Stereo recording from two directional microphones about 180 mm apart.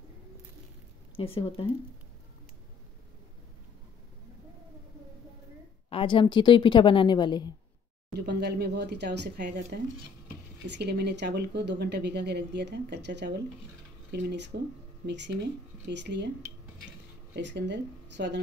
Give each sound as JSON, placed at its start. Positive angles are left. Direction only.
{"t": 1.1, "sound": "speech", "side_deg": 30}
{"t": 5.9, "sound": "a woman's voice", "side_deg": 30}
{"t": 8.1, "sound": "speech", "side_deg": -65}
{"t": 17.4, "sound": "speech", "side_deg": -75}